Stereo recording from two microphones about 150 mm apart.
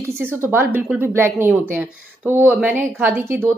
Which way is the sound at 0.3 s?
15° right (ahead or behind).